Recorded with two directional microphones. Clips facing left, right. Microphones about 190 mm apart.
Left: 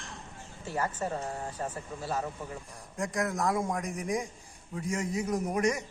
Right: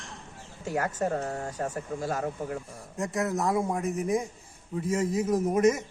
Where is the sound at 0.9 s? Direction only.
50° right (ahead or behind).